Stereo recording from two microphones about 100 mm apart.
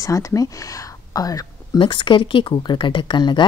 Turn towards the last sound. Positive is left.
turn(degrees=50)  # may be behind; listen again after turning